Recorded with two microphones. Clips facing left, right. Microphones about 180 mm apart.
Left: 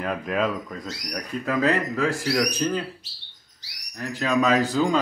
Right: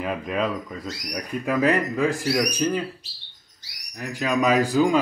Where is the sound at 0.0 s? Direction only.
Centre (ahead or behind).